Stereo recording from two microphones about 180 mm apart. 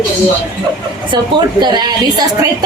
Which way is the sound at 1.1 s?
25° right (ahead or behind).